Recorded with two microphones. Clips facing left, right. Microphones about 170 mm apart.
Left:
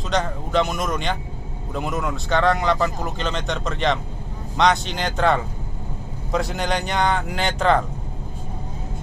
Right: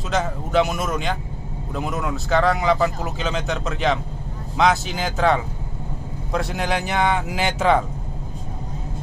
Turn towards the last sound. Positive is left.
turn(degrees=-5)  # may be behind; listen again after turning